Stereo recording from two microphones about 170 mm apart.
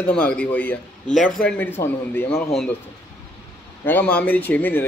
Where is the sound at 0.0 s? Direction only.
5° left (ahead or behind).